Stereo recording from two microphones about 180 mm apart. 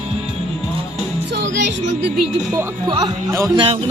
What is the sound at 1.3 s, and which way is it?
Music, 75° right (ahead or behind).